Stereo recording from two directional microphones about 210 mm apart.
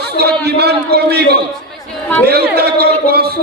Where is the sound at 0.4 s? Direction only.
50° right (ahead or behind).